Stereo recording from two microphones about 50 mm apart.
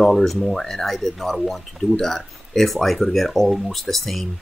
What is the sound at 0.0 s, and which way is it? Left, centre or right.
Speech, centre.